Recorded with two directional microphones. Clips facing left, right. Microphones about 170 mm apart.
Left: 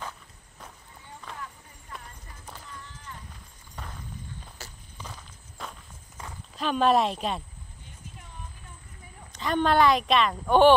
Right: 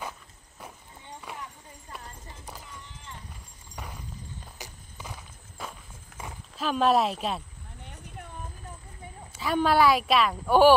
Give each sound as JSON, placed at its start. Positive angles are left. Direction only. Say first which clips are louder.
{"t": 1.2, "sound": "clip-clop", "louder": "left 1 dB", "side_deg": -20}
{"t": 3.7, "sound": "a sound", "louder": "right 1 dB", "side_deg": -10}
{"t": 4.6, "sound": "walk", "louder": "right 1 dB", "side_deg": -10}
{"t": 6.5, "sound": "a woman's voice", "louder": "left 1 dB", "side_deg": 0}
{"t": 7.8, "sound": "a sound", "louder": "right 6 dB", "side_deg": -65}
{"t": 9.3, "sound": "a woman's voice", "louder": "even", "side_deg": -5}